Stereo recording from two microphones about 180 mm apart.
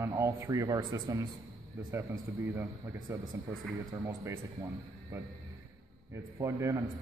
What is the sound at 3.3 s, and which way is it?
Speech, 15° right (ahead or behind).